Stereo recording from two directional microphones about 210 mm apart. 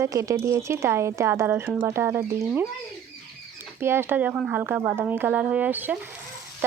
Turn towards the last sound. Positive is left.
turn(degrees=-10)  # may be behind; listen again after turning